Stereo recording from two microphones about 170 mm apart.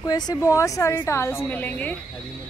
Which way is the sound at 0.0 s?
20° left (ahead or behind).